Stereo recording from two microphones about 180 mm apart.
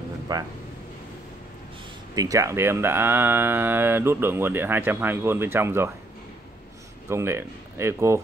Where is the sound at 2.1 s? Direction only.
20° right (ahead or behind).